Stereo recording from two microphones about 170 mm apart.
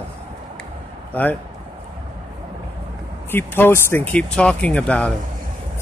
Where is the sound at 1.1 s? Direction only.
10° left (ahead or behind).